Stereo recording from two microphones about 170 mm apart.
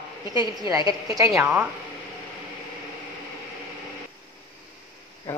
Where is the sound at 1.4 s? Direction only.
10° right (ahead or behind).